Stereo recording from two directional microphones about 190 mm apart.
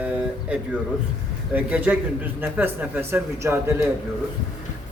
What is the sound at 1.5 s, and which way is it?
A man's voice, 10° right (ahead or behind).